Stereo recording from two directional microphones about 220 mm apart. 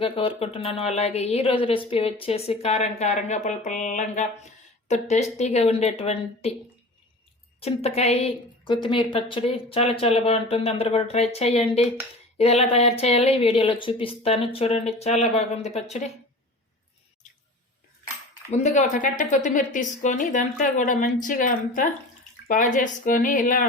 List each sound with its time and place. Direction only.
0.0 s a woman's voice: 25° left (ahead or behind)
7.6 s a woman's voice: 30° left (ahead or behind)
18.5 s a woman's voice: 35° left (ahead or behind)